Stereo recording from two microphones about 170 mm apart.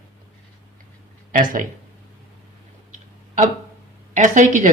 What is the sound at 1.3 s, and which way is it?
Speech, 50° right (ahead or behind).